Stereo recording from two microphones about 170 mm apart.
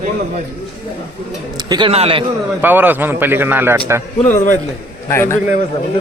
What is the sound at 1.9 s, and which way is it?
Speech, 35° right (ahead or behind).